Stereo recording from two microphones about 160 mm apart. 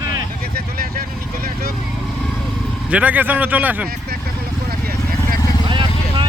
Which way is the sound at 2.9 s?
10° right (ahead or behind).